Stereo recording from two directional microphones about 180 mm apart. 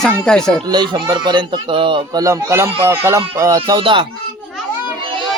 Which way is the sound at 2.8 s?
15° right (ahead or behind).